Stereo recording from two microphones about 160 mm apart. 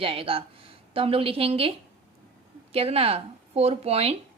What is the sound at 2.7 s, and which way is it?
A woman's voice, 40° right (ahead or behind).